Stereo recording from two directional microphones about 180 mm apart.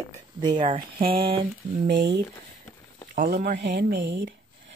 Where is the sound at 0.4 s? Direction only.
25° right (ahead or behind).